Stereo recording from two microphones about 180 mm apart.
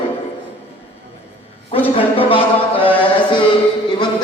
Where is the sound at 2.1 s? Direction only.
30° left (ahead or behind).